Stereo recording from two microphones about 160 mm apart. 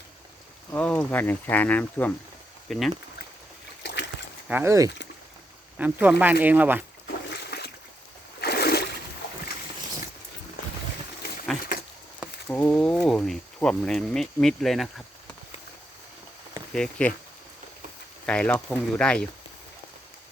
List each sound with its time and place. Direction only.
0.7 s speech: 10° left (ahead or behind)
3.8 s splash: 90° left
4.4 s speech: 15° right (ahead or behind)
7.3 s splash: 90° left
8.4 s a sound: 85° left
12.5 s speech: 10° left (ahead or behind)
16.7 s speech: 5° left (ahead or behind)
18.3 s speech: 10° left (ahead or behind)